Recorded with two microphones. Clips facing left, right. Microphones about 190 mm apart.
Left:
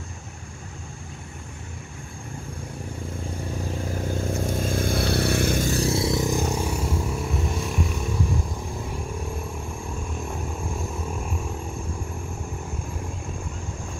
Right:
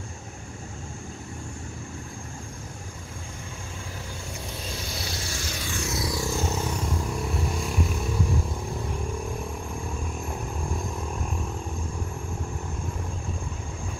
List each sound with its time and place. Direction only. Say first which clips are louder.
4.4 s vehicle: left 10 dB; 50° left (ahead or behind); by 8.0 s centre (ahead or behind)